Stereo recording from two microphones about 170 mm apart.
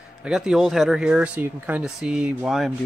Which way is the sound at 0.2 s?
5° right (ahead or behind).